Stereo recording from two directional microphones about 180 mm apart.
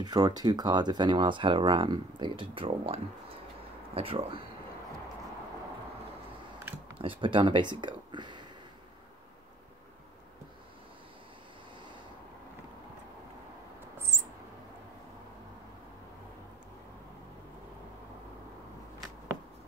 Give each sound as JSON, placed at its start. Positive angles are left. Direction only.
{"t": 0.0, "sound": "speech", "side_deg": -20}
{"t": 7.0, "sound": "speech", "side_deg": -30}